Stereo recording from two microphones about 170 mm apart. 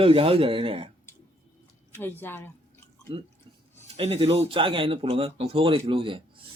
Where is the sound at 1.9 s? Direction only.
10° left (ahead or behind).